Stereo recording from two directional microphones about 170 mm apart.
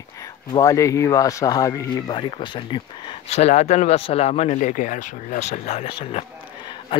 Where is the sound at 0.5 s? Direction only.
20° left (ahead or behind).